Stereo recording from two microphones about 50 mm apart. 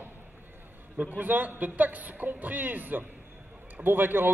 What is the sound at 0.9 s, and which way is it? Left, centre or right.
A man's voice, right.